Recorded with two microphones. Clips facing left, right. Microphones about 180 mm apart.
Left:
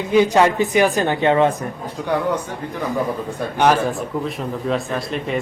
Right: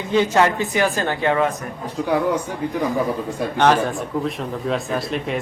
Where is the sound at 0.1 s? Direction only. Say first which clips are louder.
Left 2 dB; 15° left (ahead or behind).